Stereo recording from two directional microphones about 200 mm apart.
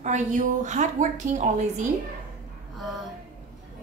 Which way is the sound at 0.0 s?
40° right (ahead or behind).